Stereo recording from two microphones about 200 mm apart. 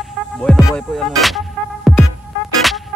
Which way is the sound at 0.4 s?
5° left (ahead or behind).